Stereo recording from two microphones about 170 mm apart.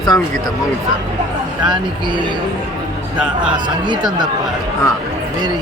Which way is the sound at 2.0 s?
25° right (ahead or behind).